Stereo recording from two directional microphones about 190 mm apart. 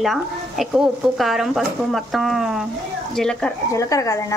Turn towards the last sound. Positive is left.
turn(degrees=15)  # may be behind; listen again after turning